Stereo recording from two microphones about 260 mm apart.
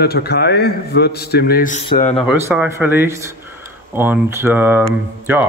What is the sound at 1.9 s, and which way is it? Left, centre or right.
Speech, left.